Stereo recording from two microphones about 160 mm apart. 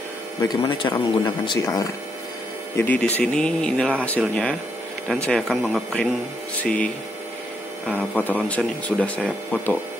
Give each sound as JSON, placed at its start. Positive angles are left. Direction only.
{"t": 0.4, "sound": "speech", "side_deg": 25}
{"t": 2.7, "sound": "speech", "side_deg": 10}